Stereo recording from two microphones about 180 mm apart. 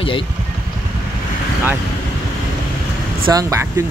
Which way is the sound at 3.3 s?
15° right (ahead or behind).